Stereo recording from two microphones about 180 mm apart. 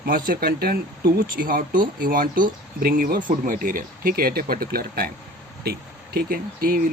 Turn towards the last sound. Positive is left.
turn(degrees=-55)  # may be behind; listen again after turning